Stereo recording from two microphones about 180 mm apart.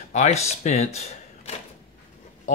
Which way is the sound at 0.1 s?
40° left (ahead or behind).